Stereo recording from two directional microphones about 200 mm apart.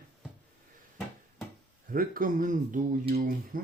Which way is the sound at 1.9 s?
45° right (ahead or behind).